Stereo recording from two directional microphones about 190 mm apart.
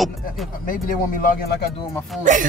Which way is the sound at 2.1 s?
Centre (ahead or behind).